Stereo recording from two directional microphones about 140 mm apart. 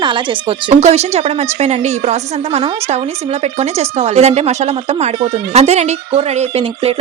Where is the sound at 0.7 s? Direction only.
50° right (ahead or behind).